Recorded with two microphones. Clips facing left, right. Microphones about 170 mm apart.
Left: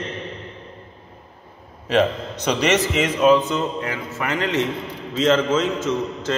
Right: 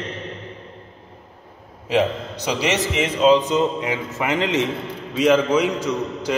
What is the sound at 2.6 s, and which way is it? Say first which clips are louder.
A man's voice: left 2 dB; 10° right (ahead or behind).